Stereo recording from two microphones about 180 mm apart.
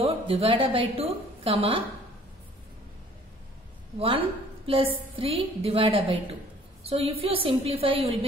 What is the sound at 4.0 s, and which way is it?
A woman's voice, 30° right (ahead or behind).